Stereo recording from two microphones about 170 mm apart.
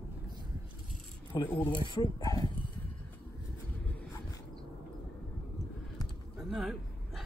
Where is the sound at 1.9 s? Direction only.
25° left (ahead or behind).